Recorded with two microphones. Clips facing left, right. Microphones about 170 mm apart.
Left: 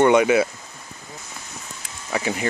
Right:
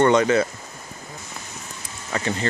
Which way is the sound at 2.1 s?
10° left (ahead or behind).